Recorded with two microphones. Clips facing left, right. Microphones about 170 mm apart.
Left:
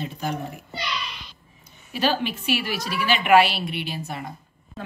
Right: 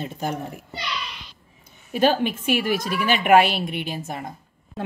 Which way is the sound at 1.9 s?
50° right (ahead or behind).